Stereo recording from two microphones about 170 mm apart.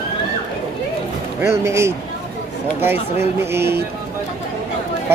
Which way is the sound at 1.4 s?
15° right (ahead or behind).